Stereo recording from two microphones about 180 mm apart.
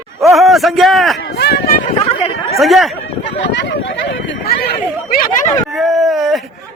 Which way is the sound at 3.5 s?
80° left.